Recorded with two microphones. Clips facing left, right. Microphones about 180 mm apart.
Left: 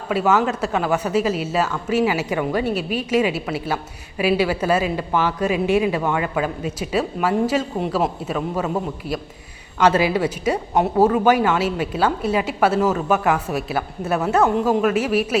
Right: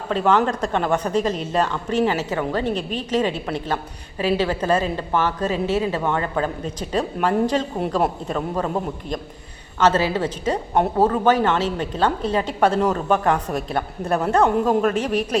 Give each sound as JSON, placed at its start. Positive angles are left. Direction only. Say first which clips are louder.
{"t": 0.1, "sound": "a woman's voice", "louder": "even", "side_deg": 10}